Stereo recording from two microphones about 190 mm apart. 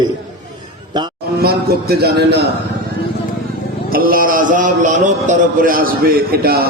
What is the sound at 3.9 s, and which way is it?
A man's voice, 50° right (ahead or behind).